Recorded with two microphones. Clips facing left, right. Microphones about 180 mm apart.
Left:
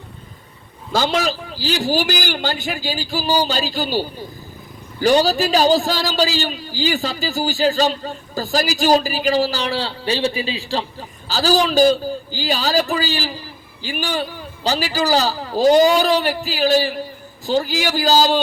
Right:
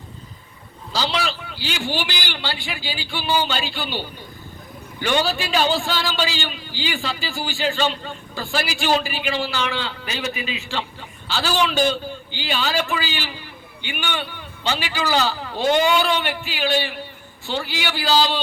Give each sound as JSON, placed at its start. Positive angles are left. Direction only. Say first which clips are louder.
{"t": 0.9, "sound": "a man's voice", "louder": "left 5 dB", "side_deg": 45}